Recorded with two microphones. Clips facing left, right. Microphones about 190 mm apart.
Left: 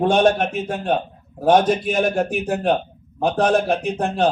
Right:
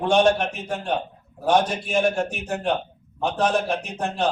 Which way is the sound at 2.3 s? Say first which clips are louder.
Left 5 dB; 55° left (ahead or behind).